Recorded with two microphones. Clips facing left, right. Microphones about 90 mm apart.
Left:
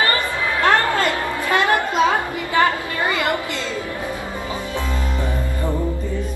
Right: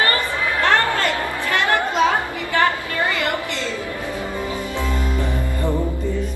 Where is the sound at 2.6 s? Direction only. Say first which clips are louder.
Even; 20° left (ahead or behind).